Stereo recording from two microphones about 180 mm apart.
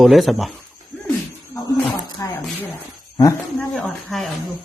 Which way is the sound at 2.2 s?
15° left (ahead or behind).